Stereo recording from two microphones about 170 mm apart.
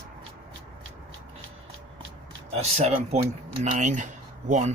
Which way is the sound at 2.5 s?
40° right (ahead or behind).